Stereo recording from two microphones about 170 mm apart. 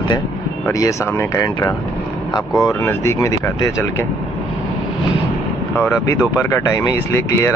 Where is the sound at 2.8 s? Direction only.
15° left (ahead or behind).